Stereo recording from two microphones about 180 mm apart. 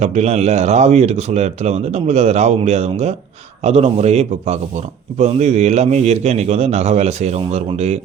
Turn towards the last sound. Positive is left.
turn(degrees=-35)  # may be behind; listen again after turning